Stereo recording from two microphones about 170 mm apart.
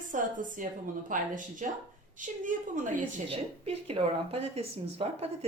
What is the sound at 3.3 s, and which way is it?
Speech, 35° right (ahead or behind).